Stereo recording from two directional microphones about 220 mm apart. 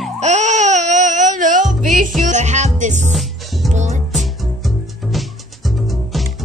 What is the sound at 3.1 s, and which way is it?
Music, centre (ahead or behind).